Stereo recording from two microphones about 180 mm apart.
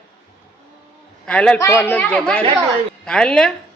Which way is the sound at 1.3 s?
5° left (ahead or behind).